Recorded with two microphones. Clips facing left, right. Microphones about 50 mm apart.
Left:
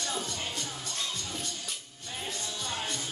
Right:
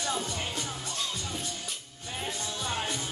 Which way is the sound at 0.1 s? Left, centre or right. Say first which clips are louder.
Right 2 dB; centre.